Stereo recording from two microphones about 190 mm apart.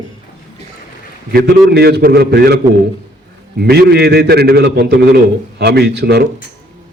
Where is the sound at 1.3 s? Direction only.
55° right (ahead or behind).